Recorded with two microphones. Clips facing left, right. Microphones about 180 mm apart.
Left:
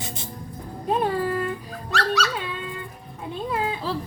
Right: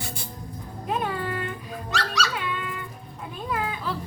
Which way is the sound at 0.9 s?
35° left (ahead or behind).